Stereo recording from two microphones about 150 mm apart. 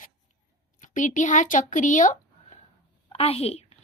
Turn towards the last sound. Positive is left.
turn(degrees=40)  # may be behind; listen again after turning